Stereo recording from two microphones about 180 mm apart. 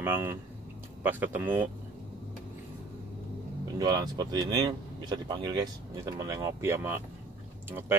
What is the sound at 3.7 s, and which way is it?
A man's voice, 20° right (ahead or behind).